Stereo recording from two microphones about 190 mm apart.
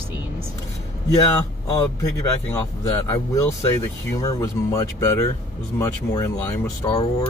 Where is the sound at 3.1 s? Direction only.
15° left (ahead or behind).